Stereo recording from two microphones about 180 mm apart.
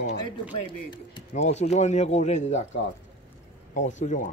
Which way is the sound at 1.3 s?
40° left (ahead or behind).